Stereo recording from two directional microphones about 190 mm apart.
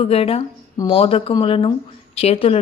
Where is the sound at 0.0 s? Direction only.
30° left (ahead or behind).